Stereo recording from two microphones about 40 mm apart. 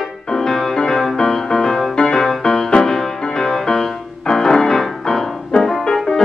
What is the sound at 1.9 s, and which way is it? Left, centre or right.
Music, left.